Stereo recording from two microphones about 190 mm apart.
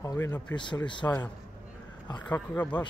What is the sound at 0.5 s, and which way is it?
Speech, 25° left (ahead or behind).